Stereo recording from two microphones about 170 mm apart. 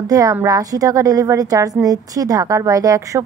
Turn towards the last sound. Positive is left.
turn(degrees=-20)  # may be behind; listen again after turning